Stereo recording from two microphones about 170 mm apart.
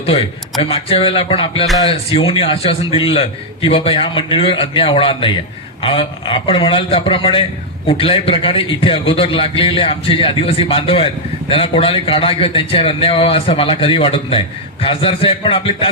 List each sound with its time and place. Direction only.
0.0 s a man's voice: 35° left (ahead or behind)